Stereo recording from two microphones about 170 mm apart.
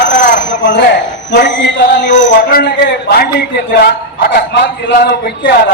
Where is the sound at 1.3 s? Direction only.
85° left.